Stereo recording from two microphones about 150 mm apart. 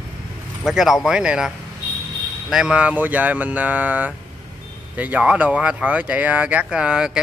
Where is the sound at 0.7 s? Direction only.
Centre (ahead or behind).